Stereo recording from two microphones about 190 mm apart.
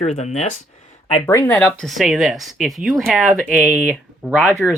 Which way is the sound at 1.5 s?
Centre (ahead or behind).